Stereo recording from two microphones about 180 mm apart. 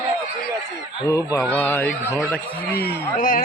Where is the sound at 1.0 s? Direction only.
15° left (ahead or behind).